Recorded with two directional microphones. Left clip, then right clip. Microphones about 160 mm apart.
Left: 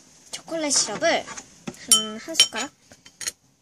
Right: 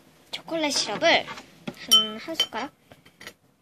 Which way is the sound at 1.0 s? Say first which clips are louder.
Right 2 dB; 50° left (ahead or behind).